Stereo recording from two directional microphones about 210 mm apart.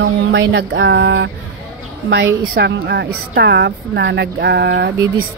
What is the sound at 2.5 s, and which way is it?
Speech, 55° right (ahead or behind).